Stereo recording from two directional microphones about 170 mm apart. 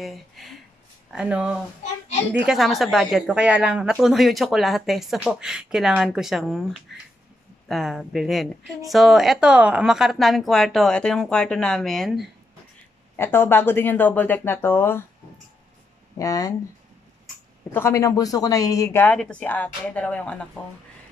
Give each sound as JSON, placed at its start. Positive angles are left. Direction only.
{"t": 0.0, "sound": "a woman's voice", "side_deg": 0}
{"t": 13.1, "sound": "speech", "side_deg": 15}
{"t": 16.2, "sound": "a woman's voice", "side_deg": 20}
{"t": 17.7, "sound": "a woman's voice", "side_deg": 15}